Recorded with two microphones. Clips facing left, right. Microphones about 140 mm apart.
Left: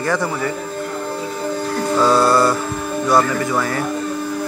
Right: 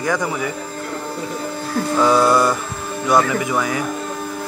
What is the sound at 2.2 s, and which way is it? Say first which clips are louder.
Mantra: left 1 dB; 20° right (ahead or behind).